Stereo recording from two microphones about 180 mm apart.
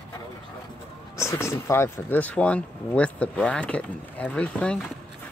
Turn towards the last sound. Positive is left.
turn(degrees=5)  # may be behind; listen again after turning